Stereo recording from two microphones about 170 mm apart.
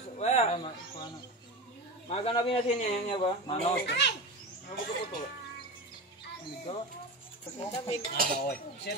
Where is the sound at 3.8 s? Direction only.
90° left.